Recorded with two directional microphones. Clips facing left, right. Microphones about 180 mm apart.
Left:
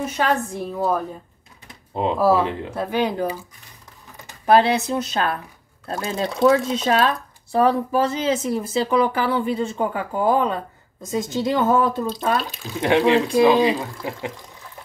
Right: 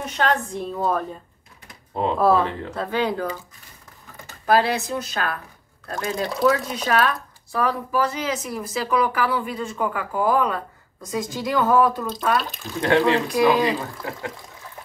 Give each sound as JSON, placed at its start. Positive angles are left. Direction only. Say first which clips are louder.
{"t": 0.2, "sound": "speech", "louder": "even", "side_deg": 10}